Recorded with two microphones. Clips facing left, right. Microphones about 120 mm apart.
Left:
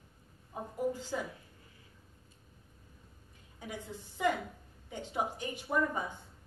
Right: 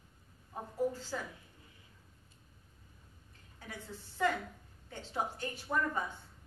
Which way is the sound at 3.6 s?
15° left (ahead or behind).